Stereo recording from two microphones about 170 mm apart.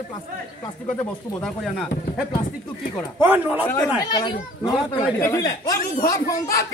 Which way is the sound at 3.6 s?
10° left (ahead or behind).